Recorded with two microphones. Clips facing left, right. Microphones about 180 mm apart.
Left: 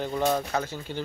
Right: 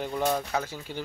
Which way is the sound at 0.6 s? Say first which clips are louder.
Left 2 dB; 10° right (ahead or behind).